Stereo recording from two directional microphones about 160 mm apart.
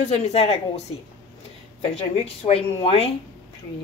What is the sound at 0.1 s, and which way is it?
Speech, 40° left (ahead or behind).